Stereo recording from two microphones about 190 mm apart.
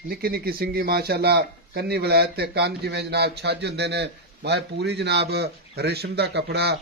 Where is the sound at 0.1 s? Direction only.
55° right (ahead or behind).